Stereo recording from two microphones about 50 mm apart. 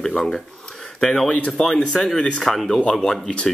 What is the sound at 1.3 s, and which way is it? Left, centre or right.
Speech, left.